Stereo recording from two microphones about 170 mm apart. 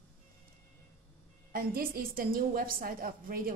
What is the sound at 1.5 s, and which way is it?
A woman's voice, 60° right (ahead or behind).